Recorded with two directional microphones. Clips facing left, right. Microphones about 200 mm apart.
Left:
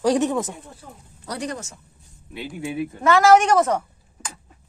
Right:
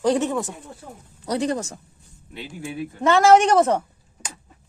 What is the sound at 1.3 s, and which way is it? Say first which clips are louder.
Speech: right 6 dB; 25° right (ahead or behind).